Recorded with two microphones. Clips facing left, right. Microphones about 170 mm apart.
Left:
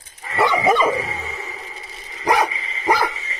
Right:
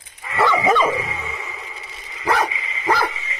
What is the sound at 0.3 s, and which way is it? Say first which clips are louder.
Dog: even; 35° left (ahead or behind).